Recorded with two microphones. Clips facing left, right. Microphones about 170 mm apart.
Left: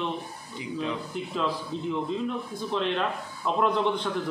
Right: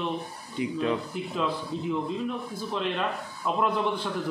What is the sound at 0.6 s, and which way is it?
Speech, 60° right (ahead or behind).